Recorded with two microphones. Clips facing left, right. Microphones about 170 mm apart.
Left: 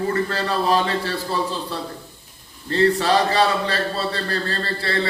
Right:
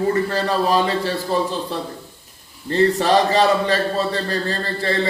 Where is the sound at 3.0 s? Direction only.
15° right (ahead or behind).